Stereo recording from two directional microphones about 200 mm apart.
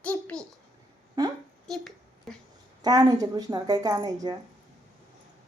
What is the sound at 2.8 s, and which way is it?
Speech, 20° right (ahead or behind).